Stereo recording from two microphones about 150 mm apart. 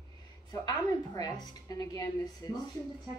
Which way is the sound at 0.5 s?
25° left (ahead or behind).